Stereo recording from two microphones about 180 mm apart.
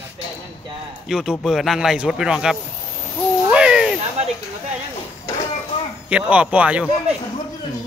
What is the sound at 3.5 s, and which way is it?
Owl, 5° right (ahead or behind).